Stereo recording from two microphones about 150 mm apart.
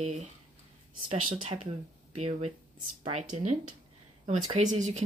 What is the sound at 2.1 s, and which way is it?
Speech, 40° right (ahead or behind).